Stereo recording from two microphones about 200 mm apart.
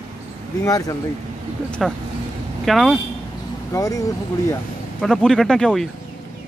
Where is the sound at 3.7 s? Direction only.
15° left (ahead or behind).